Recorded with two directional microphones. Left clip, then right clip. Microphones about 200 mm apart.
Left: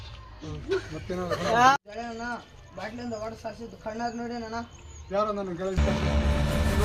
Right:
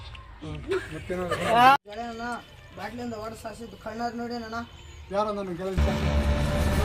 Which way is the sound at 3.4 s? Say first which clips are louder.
Left 1 dB; 15° left (ahead or behind).